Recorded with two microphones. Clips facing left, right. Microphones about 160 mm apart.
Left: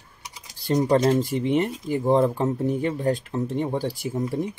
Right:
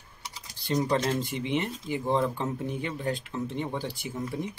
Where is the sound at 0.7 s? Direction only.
45° left (ahead or behind).